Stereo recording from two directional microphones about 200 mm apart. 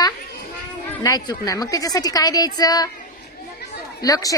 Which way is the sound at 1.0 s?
20° left (ahead or behind).